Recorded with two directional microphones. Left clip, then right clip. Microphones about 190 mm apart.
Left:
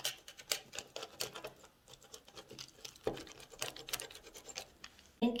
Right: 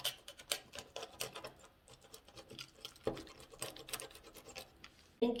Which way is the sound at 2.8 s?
20° left (ahead or behind).